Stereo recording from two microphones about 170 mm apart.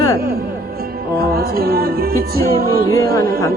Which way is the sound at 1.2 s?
60° right (ahead or behind).